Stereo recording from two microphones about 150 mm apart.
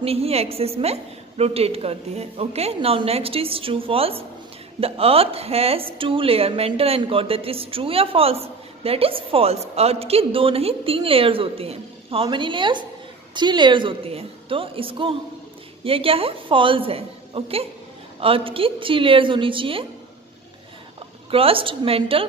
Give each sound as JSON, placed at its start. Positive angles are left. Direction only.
{"t": 0.0, "sound": "a woman's voice", "side_deg": -40}
{"t": 21.3, "sound": "a woman's voice", "side_deg": -40}